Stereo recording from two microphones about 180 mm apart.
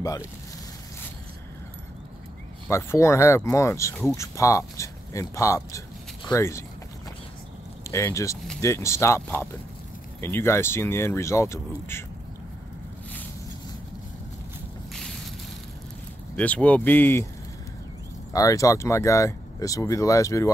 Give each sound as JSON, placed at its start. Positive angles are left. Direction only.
{"t": 0.0, "sound": "speech", "side_deg": 20}
{"t": 2.7, "sound": "speech", "side_deg": 15}
{"t": 7.9, "sound": "speech", "side_deg": 15}
{"t": 14.9, "sound": "a sound", "side_deg": 0}
{"t": 16.3, "sound": "speech", "side_deg": 5}
{"t": 18.3, "sound": "speech", "side_deg": 20}